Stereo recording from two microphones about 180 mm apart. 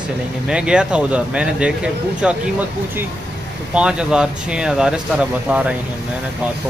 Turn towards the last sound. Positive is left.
turn(degrees=-5)  # may be behind; listen again after turning